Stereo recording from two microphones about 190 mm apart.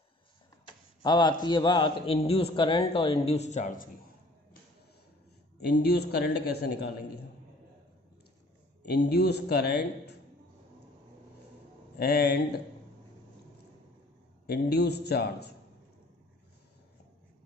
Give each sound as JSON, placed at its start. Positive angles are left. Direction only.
{"t": 0.7, "sound": "a man's voice", "side_deg": 25}
{"t": 5.6, "sound": "a man's voice", "side_deg": 60}
{"t": 8.8, "sound": "a man's voice", "side_deg": 60}
{"t": 12.0, "sound": "a man's voice", "side_deg": 55}
{"t": 14.4, "sound": "a man's voice", "side_deg": 55}